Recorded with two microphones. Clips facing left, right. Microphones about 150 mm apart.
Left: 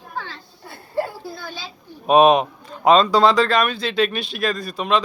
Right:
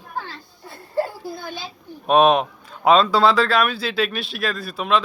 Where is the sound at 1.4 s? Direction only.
50° right (ahead or behind).